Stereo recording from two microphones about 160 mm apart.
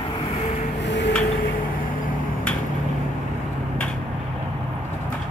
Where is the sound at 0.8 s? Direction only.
90° left.